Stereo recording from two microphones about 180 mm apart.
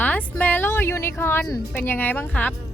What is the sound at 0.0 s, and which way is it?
Music, 5° left (ahead or behind).